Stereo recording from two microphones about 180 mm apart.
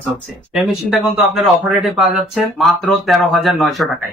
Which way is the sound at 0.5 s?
Centre (ahead or behind).